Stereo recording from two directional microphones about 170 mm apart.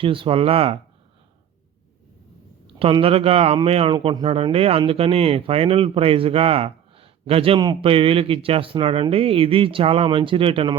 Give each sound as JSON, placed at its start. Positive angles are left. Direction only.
{"t": 0.0, "sound": "a man's voice", "side_deg": -30}
{"t": 2.6, "sound": "a man's voice", "side_deg": -30}